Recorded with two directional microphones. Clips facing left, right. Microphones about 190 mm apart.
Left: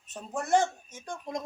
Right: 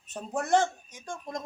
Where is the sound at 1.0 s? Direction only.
20° left (ahead or behind).